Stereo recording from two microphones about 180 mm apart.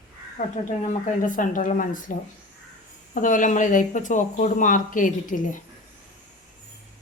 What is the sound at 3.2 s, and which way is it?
Speech, 45° left (ahead or behind).